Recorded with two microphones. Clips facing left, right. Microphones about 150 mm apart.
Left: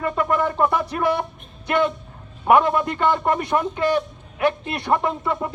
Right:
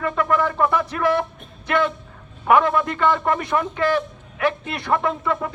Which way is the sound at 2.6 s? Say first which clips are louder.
Even; centre (ahead or behind).